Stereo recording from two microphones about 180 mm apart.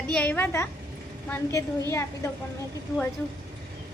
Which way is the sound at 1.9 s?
15° left (ahead or behind).